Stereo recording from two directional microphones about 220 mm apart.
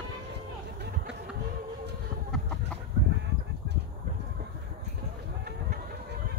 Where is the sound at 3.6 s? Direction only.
50° right (ahead or behind).